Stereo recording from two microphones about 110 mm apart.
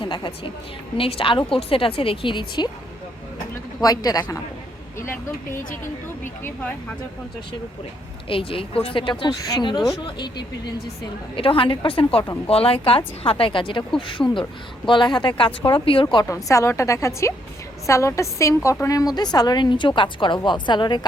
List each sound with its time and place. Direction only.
0.0 s speech: 45° left (ahead or behind)
3.8 s a woman's voice: 35° left (ahead or behind)
4.9 s vehicle: 20° left (ahead or behind)
8.3 s speech: 55° left (ahead or behind)
11.3 s speech: 55° left (ahead or behind)
16.3 s a woman's voice: 30° left (ahead or behind)